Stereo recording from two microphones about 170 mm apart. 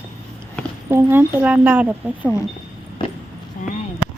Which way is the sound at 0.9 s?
15° right (ahead or behind).